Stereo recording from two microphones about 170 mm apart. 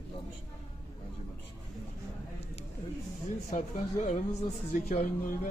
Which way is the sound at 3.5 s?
45° left (ahead or behind).